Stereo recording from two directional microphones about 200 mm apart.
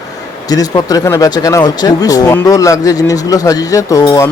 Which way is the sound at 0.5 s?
20° left (ahead or behind).